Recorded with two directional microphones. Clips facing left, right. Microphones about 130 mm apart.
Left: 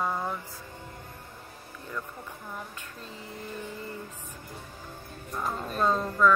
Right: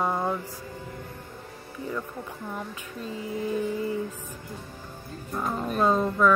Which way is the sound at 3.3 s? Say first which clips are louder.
Right 11 dB; 80° right.